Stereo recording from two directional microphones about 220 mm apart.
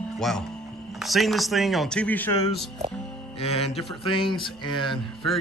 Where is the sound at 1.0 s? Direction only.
Centre (ahead or behind).